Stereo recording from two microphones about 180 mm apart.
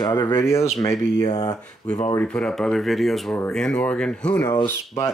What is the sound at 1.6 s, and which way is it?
Speech, 10° left (ahead or behind).